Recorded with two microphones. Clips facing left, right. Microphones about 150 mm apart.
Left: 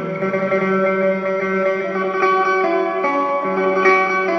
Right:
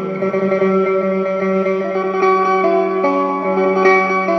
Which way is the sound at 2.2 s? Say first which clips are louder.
Right 3 dB; 20° right (ahead or behind).